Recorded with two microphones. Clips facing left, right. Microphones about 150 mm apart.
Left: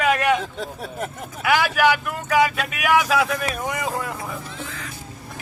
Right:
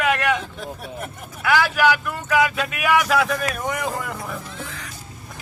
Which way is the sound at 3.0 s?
Centre (ahead or behind).